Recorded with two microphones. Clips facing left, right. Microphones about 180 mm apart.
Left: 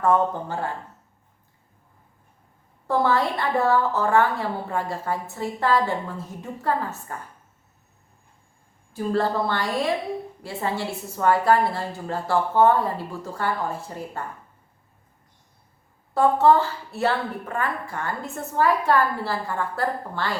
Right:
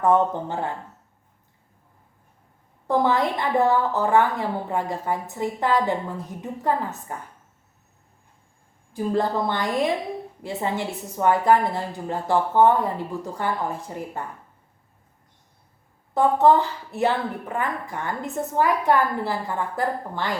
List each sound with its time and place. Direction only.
0.0 s speech: 20° right (ahead or behind)
2.8 s a woman's voice: 15° right (ahead or behind)
8.9 s a woman's voice: 15° right (ahead or behind)
16.1 s a woman's voice: 20° right (ahead or behind)